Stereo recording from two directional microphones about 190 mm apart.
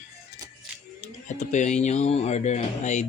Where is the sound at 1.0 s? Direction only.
40° left (ahead or behind).